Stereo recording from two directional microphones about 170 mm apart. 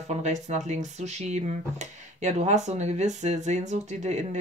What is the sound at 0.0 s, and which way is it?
Speech, 40° right (ahead or behind).